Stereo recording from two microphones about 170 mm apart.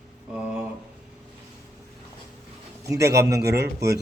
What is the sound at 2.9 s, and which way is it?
Speech, 20° right (ahead or behind).